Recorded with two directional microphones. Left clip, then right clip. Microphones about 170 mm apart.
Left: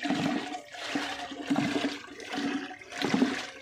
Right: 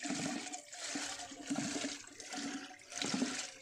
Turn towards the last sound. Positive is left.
turn(degrees=-45)  # may be behind; listen again after turning